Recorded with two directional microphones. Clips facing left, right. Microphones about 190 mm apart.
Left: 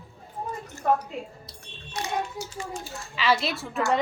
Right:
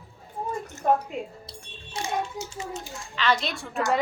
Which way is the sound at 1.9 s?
25° right (ahead or behind).